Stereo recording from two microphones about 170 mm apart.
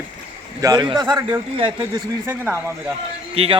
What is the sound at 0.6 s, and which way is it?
A man's voice, 25° right (ahead or behind).